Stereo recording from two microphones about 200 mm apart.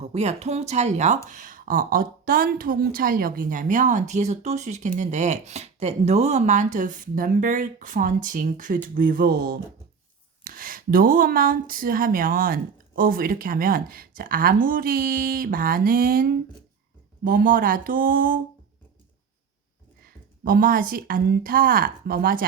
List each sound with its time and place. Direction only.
0.0 s a woman's voice: 30° right (ahead or behind)
20.1 s speech: 45° right (ahead or behind)